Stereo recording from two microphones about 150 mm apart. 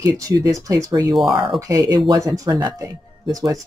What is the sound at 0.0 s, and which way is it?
Speech, 20° right (ahead or behind).